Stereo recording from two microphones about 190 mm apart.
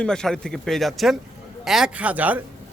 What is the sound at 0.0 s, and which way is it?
Speech, 5° left (ahead or behind).